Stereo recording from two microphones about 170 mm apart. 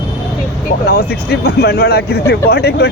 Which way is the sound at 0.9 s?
65° left (ahead or behind).